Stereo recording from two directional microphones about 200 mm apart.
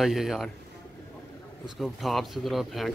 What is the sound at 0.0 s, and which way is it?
Speech, centre (ahead or behind).